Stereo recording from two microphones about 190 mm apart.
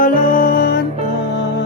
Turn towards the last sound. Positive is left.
turn(degrees=50)  # may be behind; listen again after turning